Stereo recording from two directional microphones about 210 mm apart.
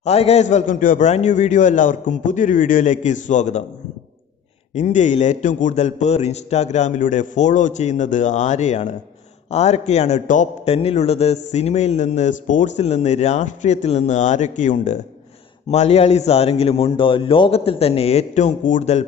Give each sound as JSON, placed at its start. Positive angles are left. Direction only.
{"t": 0.0, "sound": "a man's voice", "side_deg": 30}
{"t": 4.7, "sound": "a man's voice", "side_deg": 35}